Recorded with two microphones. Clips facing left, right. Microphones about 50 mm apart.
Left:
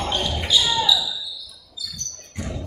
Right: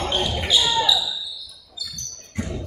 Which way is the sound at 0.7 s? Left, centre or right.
Right.